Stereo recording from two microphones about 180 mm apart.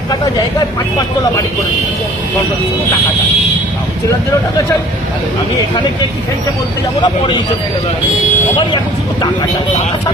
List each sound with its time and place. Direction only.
7.0 s speech: 25° left (ahead or behind)